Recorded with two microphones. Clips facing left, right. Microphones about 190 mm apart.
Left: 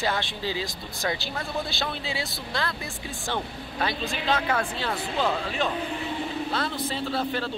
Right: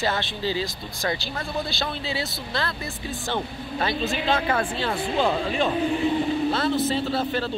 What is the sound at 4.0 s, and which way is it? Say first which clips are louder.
Speech: right 4 dB; 10° right (ahead or behind).